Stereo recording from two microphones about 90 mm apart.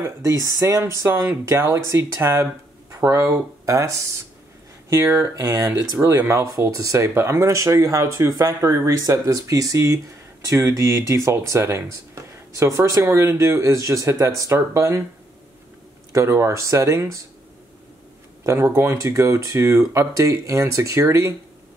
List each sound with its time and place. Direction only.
0.0 s speech: 35° right (ahead or behind)
5.1 s speech: 35° right (ahead or behind)
16.1 s speech: 35° right (ahead or behind)
18.4 s speech: 30° right (ahead or behind)